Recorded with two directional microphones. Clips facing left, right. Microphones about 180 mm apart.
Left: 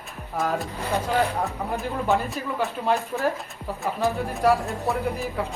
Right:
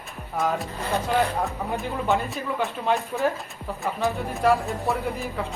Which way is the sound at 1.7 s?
Centre (ahead or behind).